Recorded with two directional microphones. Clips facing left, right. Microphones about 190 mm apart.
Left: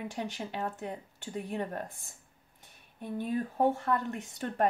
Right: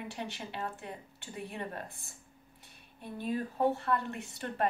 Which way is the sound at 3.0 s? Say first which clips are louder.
Left 2 dB; 45° left (ahead or behind).